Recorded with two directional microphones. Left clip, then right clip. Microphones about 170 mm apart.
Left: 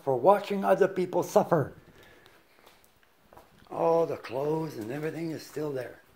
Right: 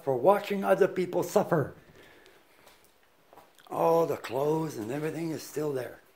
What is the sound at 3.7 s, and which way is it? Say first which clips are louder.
Speech: right 1 dB; 30° right (ahead or behind).